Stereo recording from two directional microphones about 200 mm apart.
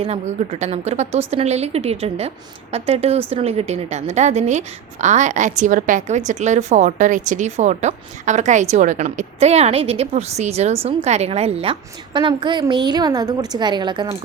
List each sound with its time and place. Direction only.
0.0 s a woman's voice: 30° right (ahead or behind)